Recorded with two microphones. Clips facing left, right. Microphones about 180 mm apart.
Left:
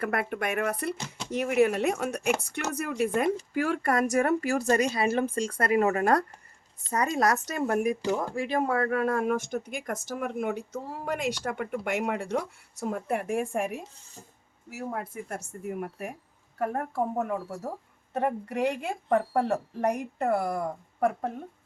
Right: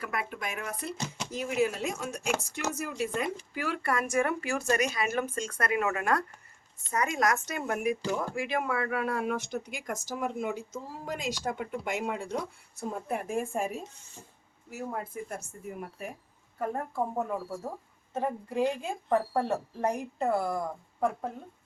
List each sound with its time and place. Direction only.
0.0 s a woman's voice: 55° left (ahead or behind)
18.1 s a woman's voice: 70° left (ahead or behind)